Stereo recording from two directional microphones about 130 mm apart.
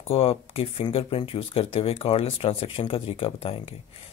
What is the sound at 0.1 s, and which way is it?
Speech, 45° left (ahead or behind).